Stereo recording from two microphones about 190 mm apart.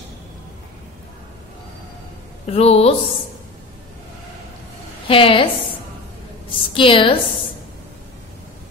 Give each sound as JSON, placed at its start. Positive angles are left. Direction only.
{"t": 2.4, "sound": "a woman's voice", "side_deg": 35}
{"t": 5.0, "sound": "a woman's voice", "side_deg": 30}
{"t": 6.5, "sound": "a woman's voice", "side_deg": 25}